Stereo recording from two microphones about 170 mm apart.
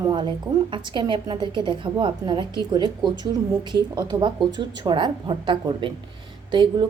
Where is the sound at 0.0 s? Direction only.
25° right (ahead or behind).